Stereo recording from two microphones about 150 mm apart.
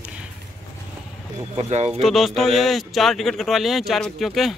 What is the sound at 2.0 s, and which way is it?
Speech, centre (ahead or behind).